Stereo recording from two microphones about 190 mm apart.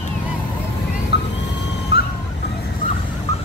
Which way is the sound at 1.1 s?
60° left (ahead or behind).